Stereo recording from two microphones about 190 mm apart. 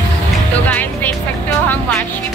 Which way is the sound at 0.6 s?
10° left (ahead or behind).